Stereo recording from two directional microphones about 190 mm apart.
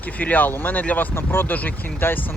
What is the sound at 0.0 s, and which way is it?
Speech, 10° left (ahead or behind).